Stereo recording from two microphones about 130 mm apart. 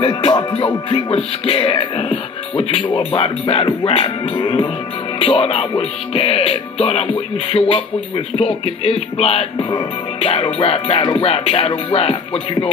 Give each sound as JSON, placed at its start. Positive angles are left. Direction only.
{"t": 0.0, "sound": "music", "side_deg": 45}
{"t": 0.8, "sound": "speech", "side_deg": 45}